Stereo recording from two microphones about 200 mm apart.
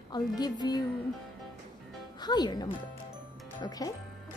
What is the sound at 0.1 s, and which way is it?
Speech, 20° left (ahead or behind).